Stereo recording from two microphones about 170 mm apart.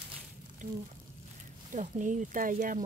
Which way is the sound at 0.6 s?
45° right (ahead or behind).